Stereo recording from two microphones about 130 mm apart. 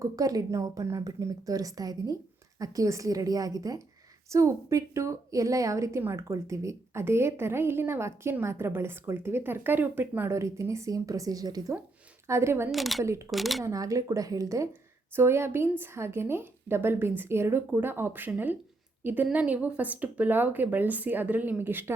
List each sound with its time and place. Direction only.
0.0 s a woman's voice: 25° right (ahead or behind)
12.7 s speech: centre (ahead or behind)
13.0 s a woman's voice: 20° right (ahead or behind)
13.3 s speech: centre (ahead or behind)
13.7 s a woman's voice: 25° right (ahead or behind)